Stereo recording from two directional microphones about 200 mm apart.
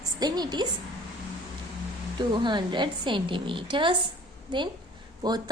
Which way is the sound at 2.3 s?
20° right (ahead or behind).